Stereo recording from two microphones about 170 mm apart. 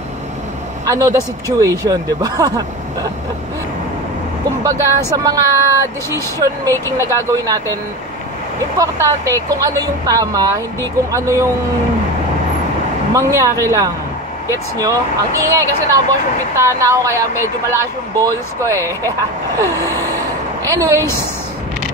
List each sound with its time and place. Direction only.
0.8 s speech: 20° right (ahead or behind)
4.6 s speech: 20° right (ahead or behind)
8.7 s speech: 20° right (ahead or behind)
13.1 s speech: 20° right (ahead or behind)